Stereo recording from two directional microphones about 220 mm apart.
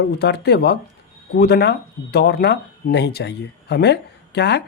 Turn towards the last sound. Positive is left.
turn(degrees=50)  # may be behind; listen again after turning